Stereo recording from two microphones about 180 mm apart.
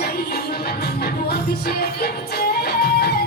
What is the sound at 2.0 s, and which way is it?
Music, 60° left (ahead or behind).